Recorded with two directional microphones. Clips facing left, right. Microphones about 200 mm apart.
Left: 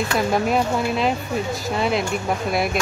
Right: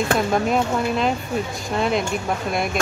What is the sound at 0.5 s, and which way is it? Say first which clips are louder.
Speech: even; centre (ahead or behind).